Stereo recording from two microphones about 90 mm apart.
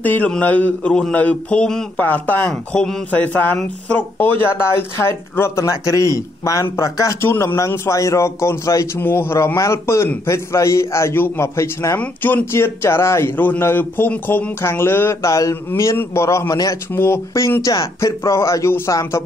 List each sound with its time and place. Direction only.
0.0 s a man's voice: 20° left (ahead or behind)
2.0 s a man's voice: 20° left (ahead or behind)
12.0 s speech: 20° left (ahead or behind); by 19.2 s 35° left (ahead or behind)